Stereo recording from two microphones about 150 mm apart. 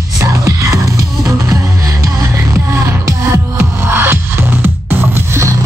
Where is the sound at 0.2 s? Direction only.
20° right (ahead or behind).